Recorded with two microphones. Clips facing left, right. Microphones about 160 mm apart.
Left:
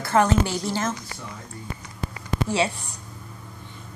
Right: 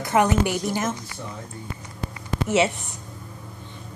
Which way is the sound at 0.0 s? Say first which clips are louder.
Even; 15° right (ahead or behind).